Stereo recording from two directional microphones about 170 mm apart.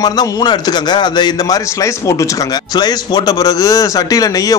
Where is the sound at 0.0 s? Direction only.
25° left (ahead or behind).